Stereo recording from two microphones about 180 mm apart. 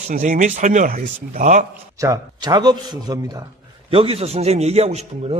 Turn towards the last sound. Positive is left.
turn(degrees=-35)  # may be behind; listen again after turning